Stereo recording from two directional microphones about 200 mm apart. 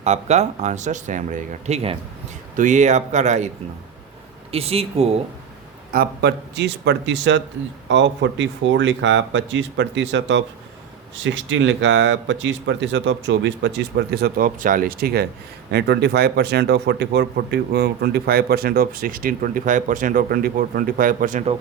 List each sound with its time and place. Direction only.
0.0 s speech: 35° right (ahead or behind)
4.5 s speech: 30° right (ahead or behind)
5.9 s speech: 50° right (ahead or behind)